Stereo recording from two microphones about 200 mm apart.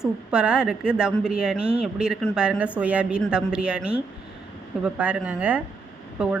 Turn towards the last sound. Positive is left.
turn(degrees=-5)  # may be behind; listen again after turning